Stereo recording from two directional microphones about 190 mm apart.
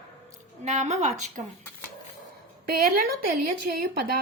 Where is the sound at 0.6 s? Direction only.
35° right (ahead or behind).